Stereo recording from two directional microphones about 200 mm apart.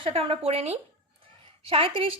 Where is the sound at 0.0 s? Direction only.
30° right (ahead or behind).